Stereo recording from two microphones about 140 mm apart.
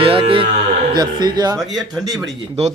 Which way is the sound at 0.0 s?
40° right (ahead or behind).